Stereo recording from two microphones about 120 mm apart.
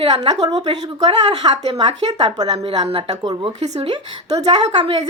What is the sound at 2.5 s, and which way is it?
Speech, 50° right (ahead or behind).